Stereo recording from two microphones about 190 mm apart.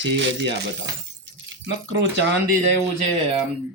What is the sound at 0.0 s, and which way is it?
Speech, 70° right (ahead or behind).